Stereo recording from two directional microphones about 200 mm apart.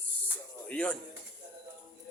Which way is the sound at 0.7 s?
5° left (ahead or behind).